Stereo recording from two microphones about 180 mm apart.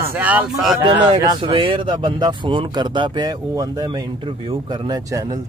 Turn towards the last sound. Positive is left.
turn(degrees=-20)  # may be behind; listen again after turning